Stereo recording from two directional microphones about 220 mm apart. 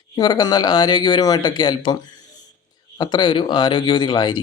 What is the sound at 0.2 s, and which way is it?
Speech, 20° left (ahead or behind).